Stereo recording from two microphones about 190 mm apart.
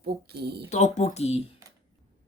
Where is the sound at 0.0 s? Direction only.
55° right (ahead or behind).